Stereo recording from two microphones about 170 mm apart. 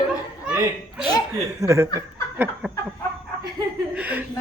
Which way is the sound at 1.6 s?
15° right (ahead or behind).